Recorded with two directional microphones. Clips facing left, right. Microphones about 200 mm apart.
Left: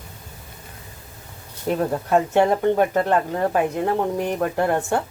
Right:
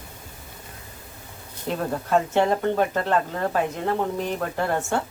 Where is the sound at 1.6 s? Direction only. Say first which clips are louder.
Left 5 dB; 15° left (ahead or behind).